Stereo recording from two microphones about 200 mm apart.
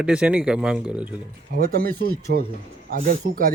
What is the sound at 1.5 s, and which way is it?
Speech, 50° right (ahead or behind).